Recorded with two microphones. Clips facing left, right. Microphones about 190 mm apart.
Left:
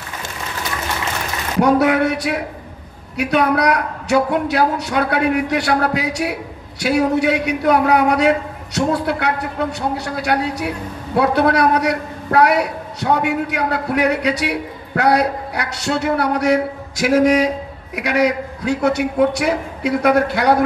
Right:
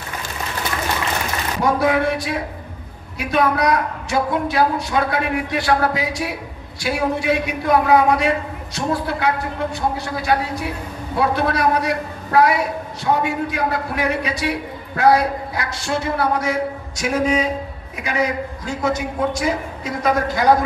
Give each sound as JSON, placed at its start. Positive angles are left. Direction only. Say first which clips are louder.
{"t": 1.6, "sound": "a man's voice", "louder": "left 4 dB", "side_deg": 70}